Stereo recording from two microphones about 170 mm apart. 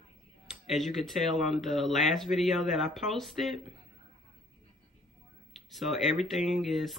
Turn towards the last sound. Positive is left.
turn(degrees=0)  # may be behind; listen again after turning